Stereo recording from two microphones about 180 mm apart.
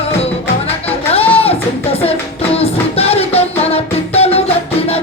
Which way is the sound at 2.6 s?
35° left (ahead or behind).